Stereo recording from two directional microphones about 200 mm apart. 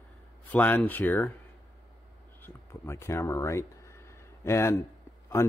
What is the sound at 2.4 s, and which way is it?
Speech, 10° left (ahead or behind).